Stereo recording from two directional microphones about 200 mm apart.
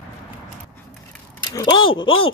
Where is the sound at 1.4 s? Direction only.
20° left (ahead or behind).